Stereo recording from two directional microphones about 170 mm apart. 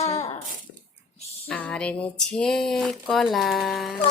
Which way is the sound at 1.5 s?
10° left (ahead or behind).